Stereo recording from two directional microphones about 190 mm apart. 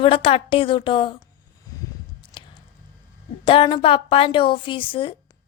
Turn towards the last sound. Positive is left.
turn(degrees=25)  # may be behind; listen again after turning